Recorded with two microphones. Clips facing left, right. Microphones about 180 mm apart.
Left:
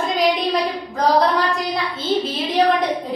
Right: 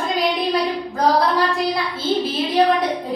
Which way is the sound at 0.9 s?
Centre (ahead or behind).